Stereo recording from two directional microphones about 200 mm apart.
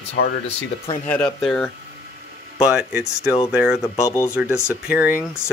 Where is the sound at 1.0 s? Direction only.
5° left (ahead or behind).